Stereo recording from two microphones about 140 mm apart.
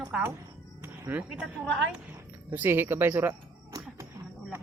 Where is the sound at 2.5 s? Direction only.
15° right (ahead or behind).